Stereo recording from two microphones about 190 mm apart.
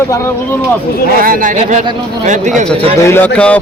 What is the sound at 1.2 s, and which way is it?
Speech, 45° right (ahead or behind).